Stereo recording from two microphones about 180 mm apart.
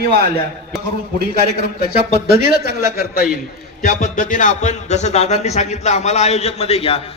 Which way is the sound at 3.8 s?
45° left (ahead or behind).